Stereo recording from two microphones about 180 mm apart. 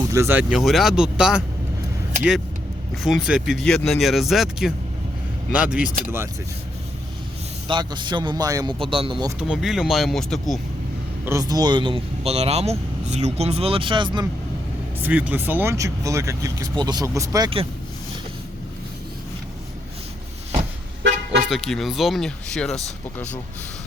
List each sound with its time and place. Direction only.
0.0 s speech: 15° right (ahead or behind)
0.5 s speech: centre (ahead or behind)
2.9 s speech: centre (ahead or behind)
7.7 s speech: 25° right (ahead or behind)
9.4 s speech: 5° right (ahead or behind)
11.3 s speech: 20° right (ahead or behind)
15.0 s speech: 10° right (ahead or behind); by 17.7 s 25° right (ahead or behind)
21.5 s speech: centre (ahead or behind)